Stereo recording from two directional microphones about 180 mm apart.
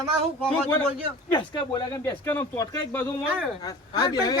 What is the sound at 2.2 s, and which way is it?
Speech, 15° left (ahead or behind).